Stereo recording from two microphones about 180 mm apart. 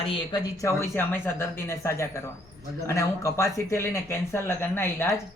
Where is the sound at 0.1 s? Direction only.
25° left (ahead or behind).